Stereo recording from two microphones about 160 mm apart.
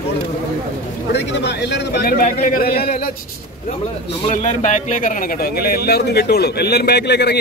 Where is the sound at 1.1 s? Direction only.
90° left; by 3.1 s 70° left (ahead or behind).